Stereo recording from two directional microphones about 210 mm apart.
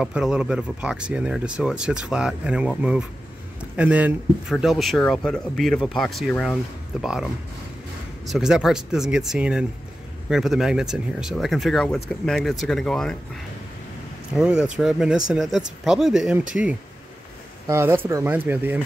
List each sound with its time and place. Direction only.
0.0 s speech: 5° right (ahead or behind)
8.3 s speech: 5° right (ahead or behind)
14.3 s speech: 5° right (ahead or behind)